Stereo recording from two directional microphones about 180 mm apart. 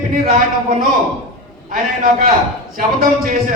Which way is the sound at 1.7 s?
50° right (ahead or behind).